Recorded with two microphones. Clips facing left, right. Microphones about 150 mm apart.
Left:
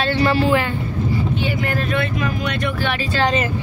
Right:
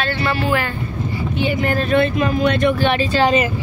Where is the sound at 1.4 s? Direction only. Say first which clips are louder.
Right 3 dB; 20° right (ahead or behind).